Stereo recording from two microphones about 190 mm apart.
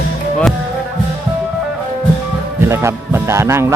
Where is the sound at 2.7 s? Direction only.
15° right (ahead or behind).